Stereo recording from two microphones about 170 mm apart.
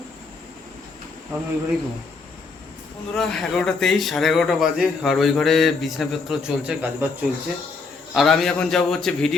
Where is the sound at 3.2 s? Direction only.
5° left (ahead or behind).